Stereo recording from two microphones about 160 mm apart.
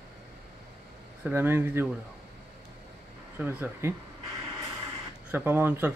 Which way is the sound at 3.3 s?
10° right (ahead or behind).